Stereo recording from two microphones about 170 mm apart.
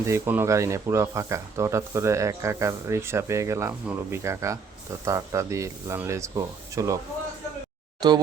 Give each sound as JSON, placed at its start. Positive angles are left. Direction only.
{"t": 0.0, "sound": "speech", "side_deg": -15}
{"t": 8.0, "sound": "speech", "side_deg": -25}